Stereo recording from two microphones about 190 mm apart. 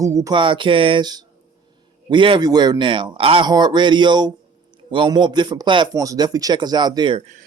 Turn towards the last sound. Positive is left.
turn(degrees=-25)  # may be behind; listen again after turning